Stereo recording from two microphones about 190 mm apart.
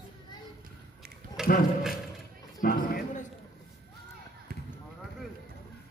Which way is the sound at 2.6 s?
50° left (ahead or behind).